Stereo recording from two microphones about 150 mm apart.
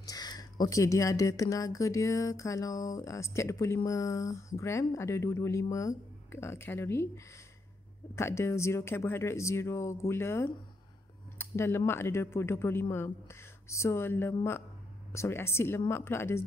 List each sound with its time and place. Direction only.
0.0 s speech: 25° left (ahead or behind)
8.2 s speech: 20° left (ahead or behind)